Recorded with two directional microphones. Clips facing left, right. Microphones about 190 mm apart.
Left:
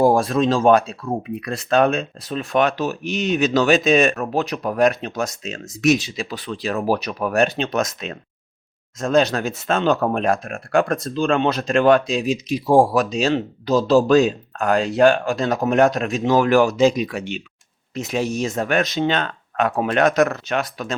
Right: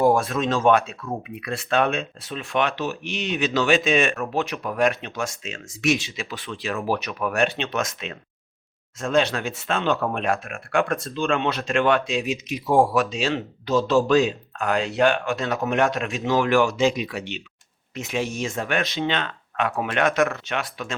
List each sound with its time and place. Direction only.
0.0 s speech: 35° left (ahead or behind)